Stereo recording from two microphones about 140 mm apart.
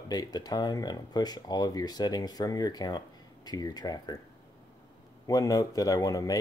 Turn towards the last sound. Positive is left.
turn(degrees=25)  # may be behind; listen again after turning